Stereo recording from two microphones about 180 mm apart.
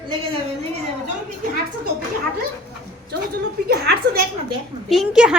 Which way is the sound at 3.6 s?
65° right (ahead or behind).